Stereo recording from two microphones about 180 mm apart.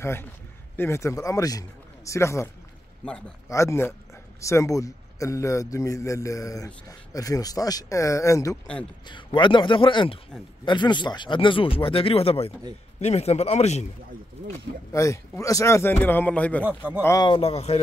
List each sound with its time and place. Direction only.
0.0 s a man's voice: 15° left (ahead or behind); by 13.8 s 40° left (ahead or behind)
14.9 s a man's voice: 15° left (ahead or behind)
16.6 s speech: 10° right (ahead or behind)
17.0 s speech: 20° left (ahead or behind)